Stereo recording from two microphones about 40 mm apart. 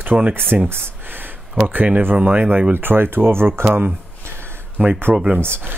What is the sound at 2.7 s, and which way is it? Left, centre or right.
Speech, right.